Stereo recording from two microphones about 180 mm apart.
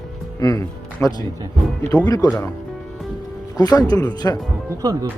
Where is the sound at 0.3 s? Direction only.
20° left (ahead or behind).